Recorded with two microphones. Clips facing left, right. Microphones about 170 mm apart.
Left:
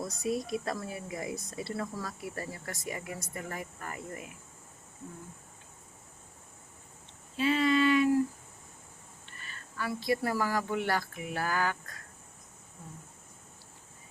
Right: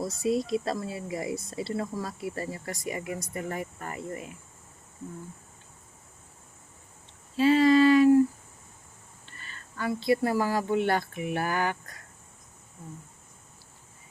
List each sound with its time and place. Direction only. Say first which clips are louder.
0.3 s speech: right 5 dB; 25° right (ahead or behind)
7.3 s child singing: right 7 dB; 40° right (ahead or behind)
9.4 s speech: right 4 dB; 30° right (ahead or behind)